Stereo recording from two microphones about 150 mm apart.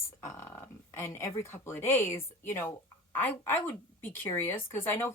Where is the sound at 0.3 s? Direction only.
15° left (ahead or behind).